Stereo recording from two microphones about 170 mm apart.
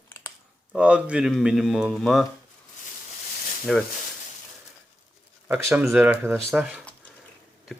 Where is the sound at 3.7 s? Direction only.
Centre (ahead or behind).